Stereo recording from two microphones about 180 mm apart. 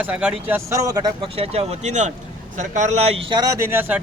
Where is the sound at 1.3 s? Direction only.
35° right (ahead or behind).